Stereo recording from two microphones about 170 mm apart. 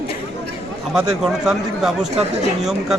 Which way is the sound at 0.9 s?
Centre (ahead or behind).